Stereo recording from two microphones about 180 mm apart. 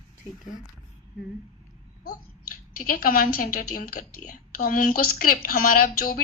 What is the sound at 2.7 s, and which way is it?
A woman's voice, 50° left (ahead or behind).